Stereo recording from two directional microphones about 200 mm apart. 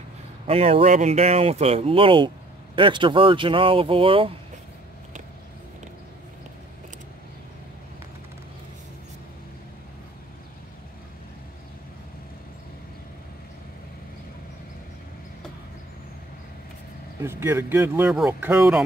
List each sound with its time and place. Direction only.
0.5 s speech: 30° right (ahead or behind)
17.2 s speech: 10° right (ahead or behind)